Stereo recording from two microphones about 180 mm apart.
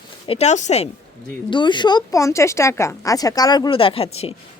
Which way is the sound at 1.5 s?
25° left (ahead or behind).